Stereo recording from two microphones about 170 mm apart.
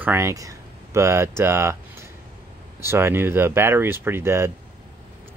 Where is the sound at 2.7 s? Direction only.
15° right (ahead or behind).